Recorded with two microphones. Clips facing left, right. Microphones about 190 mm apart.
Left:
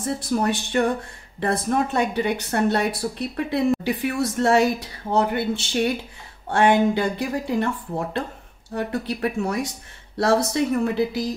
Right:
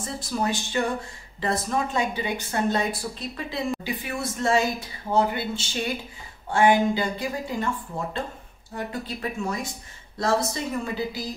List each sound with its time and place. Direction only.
0.0 s a woman's voice: 60° left (ahead or behind)